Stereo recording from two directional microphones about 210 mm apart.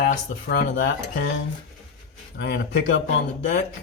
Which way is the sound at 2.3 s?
55° left (ahead or behind).